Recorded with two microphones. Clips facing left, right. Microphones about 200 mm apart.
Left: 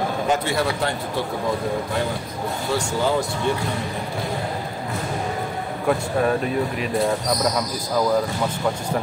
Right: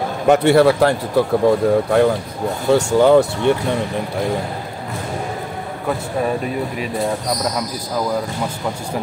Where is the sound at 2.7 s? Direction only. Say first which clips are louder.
Right 11 dB; 65° right (ahead or behind).